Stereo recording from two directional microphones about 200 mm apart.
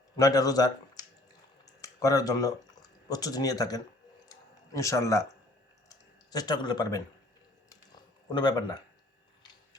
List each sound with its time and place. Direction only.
0.2 s speech: 20° left (ahead or behind)
4.3 s a sound: 15° left (ahead or behind)
6.3 s a man's voice: 20° left (ahead or behind)
8.3 s a man's voice: 20° left (ahead or behind)